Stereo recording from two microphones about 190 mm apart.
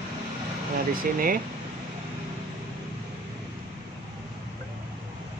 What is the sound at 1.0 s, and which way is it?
Speech, 50° right (ahead or behind).